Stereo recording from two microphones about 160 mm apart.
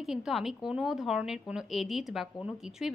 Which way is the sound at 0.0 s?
Centre (ahead or behind).